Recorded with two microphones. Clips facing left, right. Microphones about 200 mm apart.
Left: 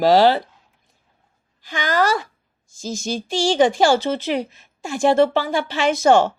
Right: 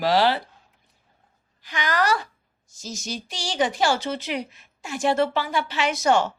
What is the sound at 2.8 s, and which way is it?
Speech, 25° left (ahead or behind).